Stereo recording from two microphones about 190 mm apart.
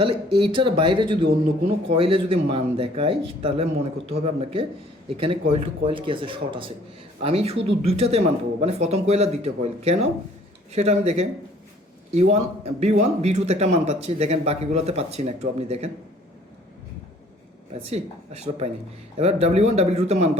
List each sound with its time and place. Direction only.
0.3 s a man's voice: 25° right (ahead or behind)
17.7 s a man's voice: 35° right (ahead or behind)